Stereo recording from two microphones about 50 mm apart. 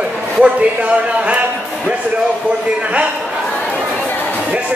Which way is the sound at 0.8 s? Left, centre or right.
Right.